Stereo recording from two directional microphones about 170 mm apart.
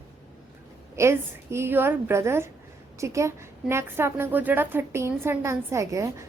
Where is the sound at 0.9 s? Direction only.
15° right (ahead or behind).